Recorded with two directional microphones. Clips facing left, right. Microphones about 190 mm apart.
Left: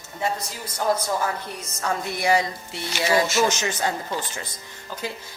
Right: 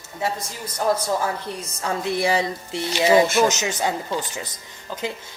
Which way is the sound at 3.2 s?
55° right (ahead or behind).